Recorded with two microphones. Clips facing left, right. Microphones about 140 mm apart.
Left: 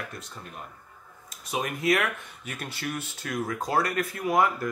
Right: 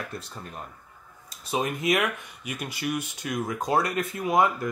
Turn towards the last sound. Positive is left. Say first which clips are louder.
# right 1 dB
turn(degrees=-20)  # may be behind; listen again after turning